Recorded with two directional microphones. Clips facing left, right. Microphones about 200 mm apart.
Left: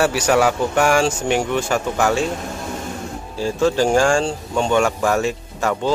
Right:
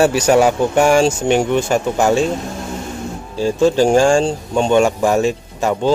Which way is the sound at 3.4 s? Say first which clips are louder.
Right 4 dB; 20° right (ahead or behind).